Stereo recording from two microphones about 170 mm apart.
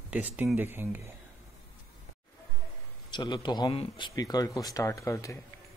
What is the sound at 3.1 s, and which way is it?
Speech, 25° left (ahead or behind).